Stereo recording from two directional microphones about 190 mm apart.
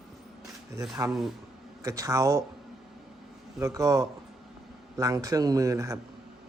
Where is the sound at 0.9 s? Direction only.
15° right (ahead or behind).